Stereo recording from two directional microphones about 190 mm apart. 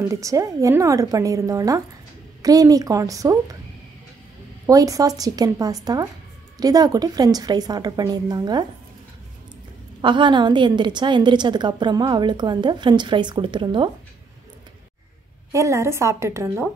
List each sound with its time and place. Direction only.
0.1 s a woman's voice: 15° right (ahead or behind)
4.6 s a woman's voice: 15° right (ahead or behind)
10.0 s a woman's voice: 25° right (ahead or behind)
15.5 s a woman's voice: 15° right (ahead or behind)